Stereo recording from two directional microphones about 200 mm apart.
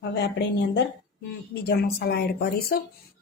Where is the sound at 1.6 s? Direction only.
55° left (ahead or behind).